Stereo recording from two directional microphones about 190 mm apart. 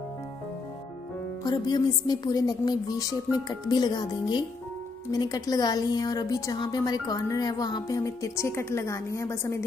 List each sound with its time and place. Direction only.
1.4 s a woman's voice: 20° left (ahead or behind)